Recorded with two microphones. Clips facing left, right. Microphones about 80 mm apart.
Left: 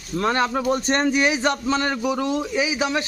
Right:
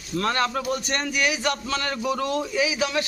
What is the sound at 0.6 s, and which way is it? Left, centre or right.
A man's voice, left.